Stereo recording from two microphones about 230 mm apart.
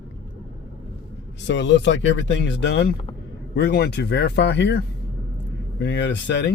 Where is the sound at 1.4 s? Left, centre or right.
Left.